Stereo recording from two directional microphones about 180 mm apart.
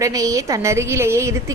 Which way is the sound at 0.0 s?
20° right (ahead or behind).